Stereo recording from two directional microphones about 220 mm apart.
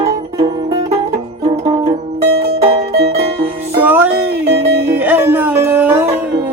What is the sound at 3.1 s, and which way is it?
Music, 25° right (ahead or behind).